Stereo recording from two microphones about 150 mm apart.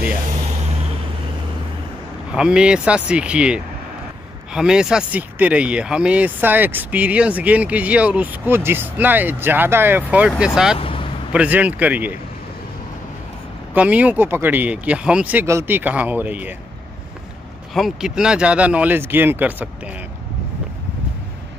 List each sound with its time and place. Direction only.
2.3 s speech: 5° right (ahead or behind)
10.8 s a sound: 35° left (ahead or behind)
11.3 s speech: 10° right (ahead or behind)
13.7 s speech: 10° right (ahead or behind)
17.7 s speech: centre (ahead or behind)